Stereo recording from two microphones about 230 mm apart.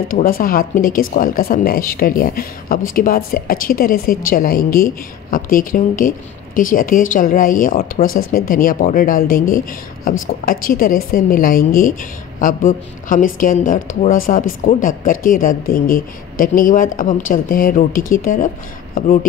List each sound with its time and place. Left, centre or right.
0.1 s speech: left